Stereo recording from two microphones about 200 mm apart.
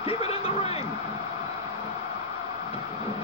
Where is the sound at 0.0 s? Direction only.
30° left (ahead or behind).